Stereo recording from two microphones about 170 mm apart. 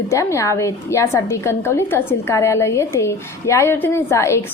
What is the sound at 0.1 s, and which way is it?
A woman's voice, 15° left (ahead or behind).